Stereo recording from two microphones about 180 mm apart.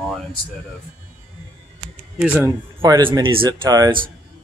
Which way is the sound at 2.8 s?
25° right (ahead or behind).